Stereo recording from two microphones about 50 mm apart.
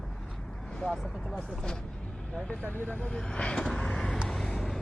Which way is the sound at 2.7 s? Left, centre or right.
Left.